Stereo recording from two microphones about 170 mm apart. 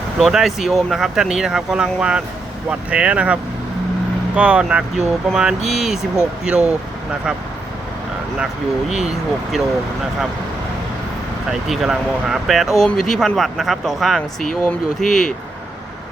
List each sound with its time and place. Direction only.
0.2 s speech: 5° right (ahead or behind)
4.4 s speech: 5° right (ahead or behind)
8.9 s speech: centre (ahead or behind)
11.7 s speech: centre (ahead or behind)